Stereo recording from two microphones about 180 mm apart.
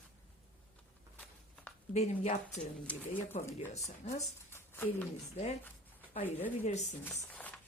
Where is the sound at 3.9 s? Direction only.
45° left (ahead or behind).